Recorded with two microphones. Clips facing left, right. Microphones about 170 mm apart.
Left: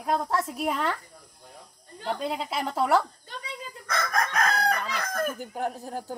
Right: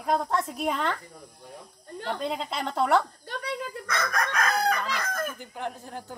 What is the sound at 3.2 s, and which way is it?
Speech, 70° right (ahead or behind).